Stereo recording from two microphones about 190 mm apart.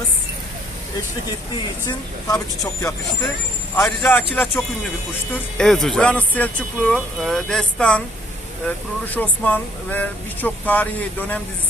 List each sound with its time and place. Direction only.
1.9 s speech: 20° left (ahead or behind)
9.0 s speech: 10° left (ahead or behind)